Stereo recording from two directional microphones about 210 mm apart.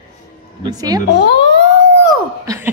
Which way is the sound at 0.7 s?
20° right (ahead or behind).